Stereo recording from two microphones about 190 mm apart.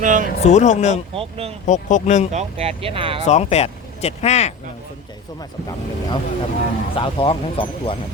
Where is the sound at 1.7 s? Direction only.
40° left (ahead or behind).